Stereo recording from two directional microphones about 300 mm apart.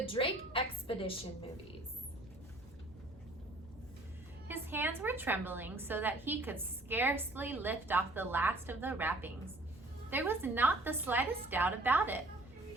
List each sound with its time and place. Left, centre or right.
0.0 s a woman's voice: centre
4.4 s a woman's voice: centre